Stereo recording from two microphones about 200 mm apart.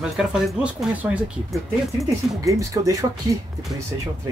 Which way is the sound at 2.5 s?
15° right (ahead or behind).